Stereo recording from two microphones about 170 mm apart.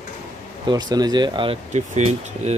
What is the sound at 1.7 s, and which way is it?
Speech, 40° right (ahead or behind).